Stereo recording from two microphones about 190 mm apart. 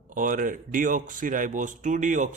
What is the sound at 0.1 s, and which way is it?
Speech, 45° right (ahead or behind).